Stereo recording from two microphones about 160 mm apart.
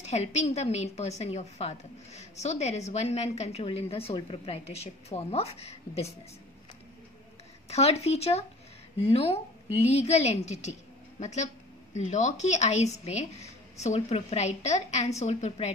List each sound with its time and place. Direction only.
0.0 s a woman's voice: 45° left (ahead or behind)
7.7 s a woman's voice: 40° left (ahead or behind)